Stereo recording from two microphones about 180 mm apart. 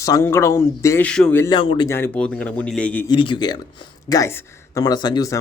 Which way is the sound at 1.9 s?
10° left (ahead or behind).